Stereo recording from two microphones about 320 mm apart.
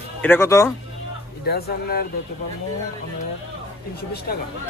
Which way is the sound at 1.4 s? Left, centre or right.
Left.